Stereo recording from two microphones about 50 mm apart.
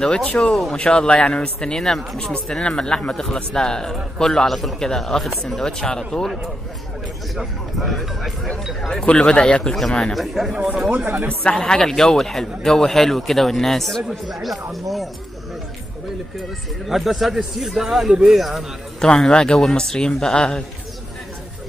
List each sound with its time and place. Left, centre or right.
0.1 s speech: left; by 5.6 s centre
5.6 s speech: centre
7.3 s speech: centre
9.0 s speech: left
10.1 s speech: centre
10.5 s speech: centre
10.9 s a man's voice: right
11.5 s speech: centre
16.8 s speech: centre
18.9 s speech: centre